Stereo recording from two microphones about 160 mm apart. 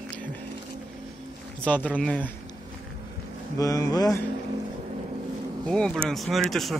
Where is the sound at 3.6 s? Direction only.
20° left (ahead or behind).